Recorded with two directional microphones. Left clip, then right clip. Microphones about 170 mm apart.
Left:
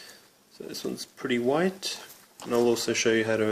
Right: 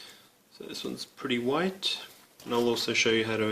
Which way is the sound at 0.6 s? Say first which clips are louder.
Left 2 dB; 30° left (ahead or behind).